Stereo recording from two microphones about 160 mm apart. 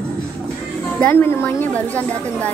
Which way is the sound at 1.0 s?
15° left (ahead or behind).